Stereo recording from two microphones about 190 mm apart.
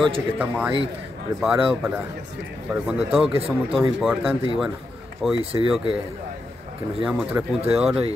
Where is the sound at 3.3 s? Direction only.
30° right (ahead or behind).